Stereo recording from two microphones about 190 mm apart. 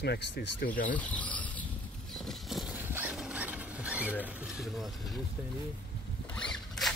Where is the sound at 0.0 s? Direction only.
60° left (ahead or behind).